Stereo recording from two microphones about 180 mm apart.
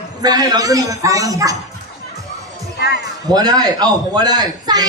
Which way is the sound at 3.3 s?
20° right (ahead or behind).